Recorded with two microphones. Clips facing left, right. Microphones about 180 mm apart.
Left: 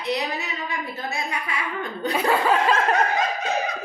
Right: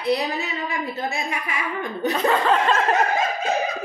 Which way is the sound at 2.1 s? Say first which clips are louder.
Even; 10° left (ahead or behind).